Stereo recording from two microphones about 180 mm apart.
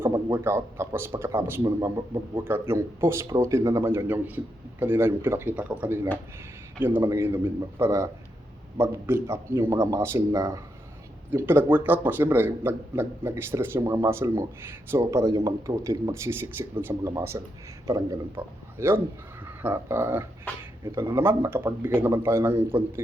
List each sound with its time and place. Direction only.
0.0 s speech: 15° right (ahead or behind)